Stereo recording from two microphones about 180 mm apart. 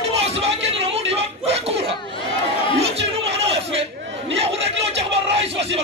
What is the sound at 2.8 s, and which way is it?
Music, 35° right (ahead or behind).